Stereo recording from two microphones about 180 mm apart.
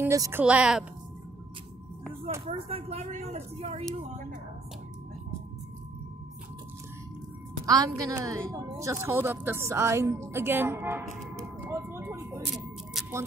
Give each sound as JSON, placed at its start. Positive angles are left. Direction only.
{"t": 0.0, "sound": "a woman's voice", "side_deg": -15}
{"t": 2.4, "sound": "speech", "side_deg": -35}
{"t": 7.6, "sound": "a woman's voice", "side_deg": -20}
{"t": 11.6, "sound": "music", "side_deg": -15}
{"t": 13.0, "sound": "music", "side_deg": 0}